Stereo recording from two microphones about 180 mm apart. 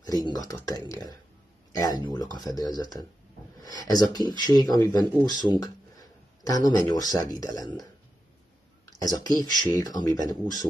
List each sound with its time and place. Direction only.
0.0 s speech: 20° left (ahead or behind)
8.9 s speech: 20° left (ahead or behind)